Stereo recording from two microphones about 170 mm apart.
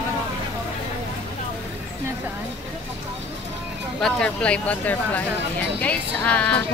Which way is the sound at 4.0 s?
5° left (ahead or behind).